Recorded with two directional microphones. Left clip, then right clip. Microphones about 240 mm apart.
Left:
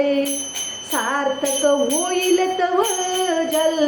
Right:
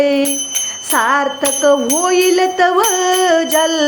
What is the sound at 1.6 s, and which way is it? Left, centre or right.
Music, right.